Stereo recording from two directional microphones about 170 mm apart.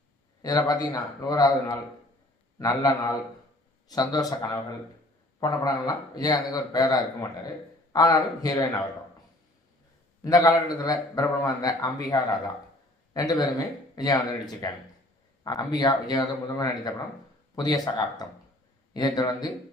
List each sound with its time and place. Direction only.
0.4 s a man's voice: 20° left (ahead or behind)
10.2 s a man's voice: 20° left (ahead or behind)